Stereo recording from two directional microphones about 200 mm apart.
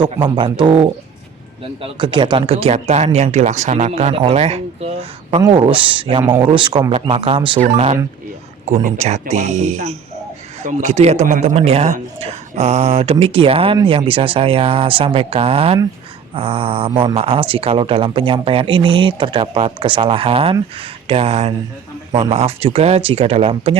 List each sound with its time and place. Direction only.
0.0 s a man's voice: 25° right (ahead or behind)